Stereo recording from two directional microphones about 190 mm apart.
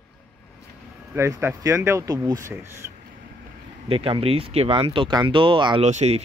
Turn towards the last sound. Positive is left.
turn(degrees=-35)  # may be behind; listen again after turning